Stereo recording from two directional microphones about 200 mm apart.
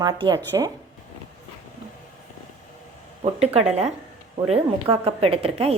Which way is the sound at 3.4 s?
30° right (ahead or behind).